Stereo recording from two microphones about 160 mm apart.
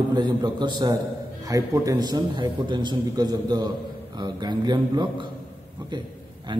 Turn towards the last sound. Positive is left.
turn(degrees=-30)  # may be behind; listen again after turning